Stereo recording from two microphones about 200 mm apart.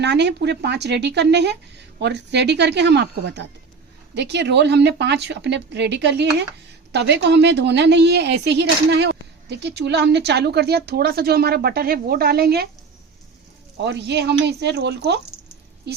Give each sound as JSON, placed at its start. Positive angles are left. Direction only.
{"t": 0.0, "sound": "speech", "side_deg": -60}
{"t": 13.7, "sound": "speech", "side_deg": -60}